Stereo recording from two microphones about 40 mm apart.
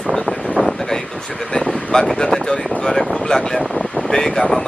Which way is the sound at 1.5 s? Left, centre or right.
Left.